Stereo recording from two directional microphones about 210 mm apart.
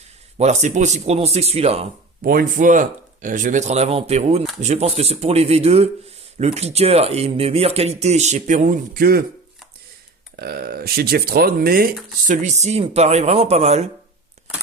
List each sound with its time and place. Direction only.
0.3 s speech: 35° right (ahead or behind)
2.2 s speech: 45° right (ahead or behind)
10.3 s speech: 45° right (ahead or behind)